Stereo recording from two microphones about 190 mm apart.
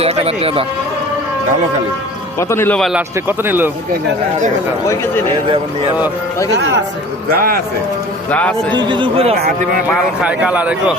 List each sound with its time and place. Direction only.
0.0 s speech: 30° right (ahead or behind)
2.4 s speech: 15° left (ahead or behind)
3.2 s speech: 10° right (ahead or behind)
8.3 s speech: 5° left (ahead or behind)
8.7 s speech: 25° right (ahead or behind)
10.2 s speech: 5° right (ahead or behind)